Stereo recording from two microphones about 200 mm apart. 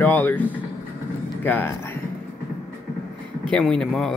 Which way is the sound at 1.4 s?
10° left (ahead or behind).